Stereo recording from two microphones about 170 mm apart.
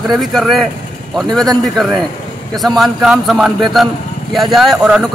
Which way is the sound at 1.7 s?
Centre (ahead or behind).